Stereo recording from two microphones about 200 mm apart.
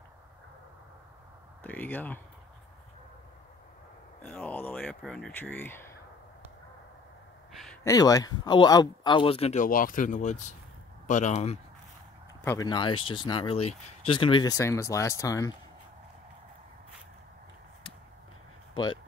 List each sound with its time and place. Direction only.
1.6 s speech: 10° left (ahead or behind)
4.2 s speech: 10° left (ahead or behind)
7.8 s speech: 15° left (ahead or behind); by 11.6 s 35° left (ahead or behind)
12.4 s speech: 20° left (ahead or behind)